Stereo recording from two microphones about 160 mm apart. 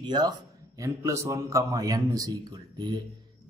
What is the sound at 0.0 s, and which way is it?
Speech, 25° right (ahead or behind).